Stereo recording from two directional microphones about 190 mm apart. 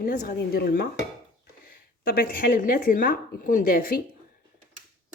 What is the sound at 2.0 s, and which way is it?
Speech, 50° left (ahead or behind).